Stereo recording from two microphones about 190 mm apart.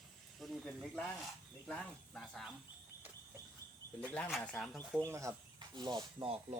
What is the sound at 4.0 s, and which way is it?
Speech, 5° left (ahead or behind).